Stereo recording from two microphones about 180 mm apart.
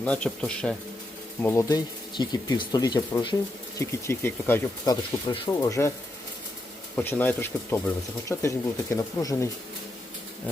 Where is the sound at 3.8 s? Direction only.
15° left (ahead or behind).